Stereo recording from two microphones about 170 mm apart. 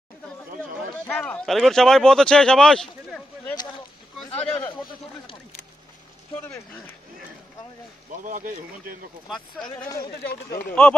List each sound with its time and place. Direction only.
0.9 s speech: 10° left (ahead or behind)
4.3 s a man's voice: 35° left (ahead or behind)
8.2 s speech: 50° right (ahead or behind)
9.3 s speech: 5° left (ahead or behind)
10.1 s speech: 65° left (ahead or behind)
10.7 s speech: 5° left (ahead or behind)